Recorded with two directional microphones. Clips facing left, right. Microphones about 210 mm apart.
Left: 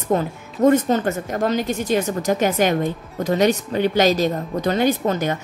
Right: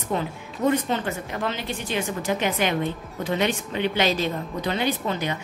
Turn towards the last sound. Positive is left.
turn(degrees=45)  # may be behind; listen again after turning